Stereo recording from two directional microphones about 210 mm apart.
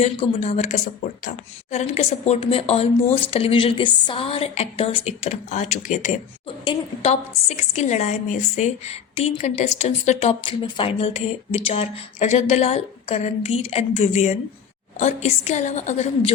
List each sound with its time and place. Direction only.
0.0 s a woman's voice: 30° left (ahead or behind)